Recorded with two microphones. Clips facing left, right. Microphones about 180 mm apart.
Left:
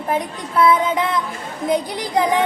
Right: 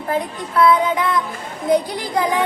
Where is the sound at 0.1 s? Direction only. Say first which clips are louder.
Right 1 dB; 20° left (ahead or behind).